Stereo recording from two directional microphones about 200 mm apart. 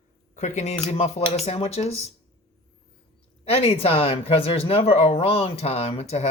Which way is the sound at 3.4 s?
30° left (ahead or behind).